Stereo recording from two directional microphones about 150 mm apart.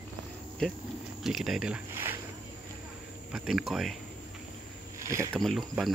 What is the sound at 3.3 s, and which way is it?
Speech, centre (ahead or behind).